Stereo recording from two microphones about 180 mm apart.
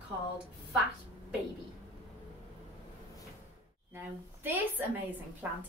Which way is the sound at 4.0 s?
10° right (ahead or behind).